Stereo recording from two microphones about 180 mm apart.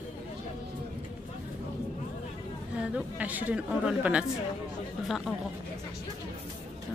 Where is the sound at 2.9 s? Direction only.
10° right (ahead or behind).